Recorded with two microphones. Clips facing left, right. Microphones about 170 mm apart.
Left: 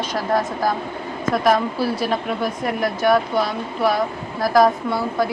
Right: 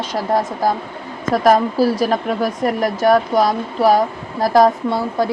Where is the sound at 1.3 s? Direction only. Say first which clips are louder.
Right 5 dB; 40° right (ahead or behind).